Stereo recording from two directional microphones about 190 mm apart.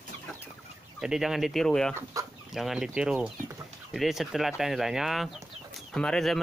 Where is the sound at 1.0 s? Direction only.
5° right (ahead or behind).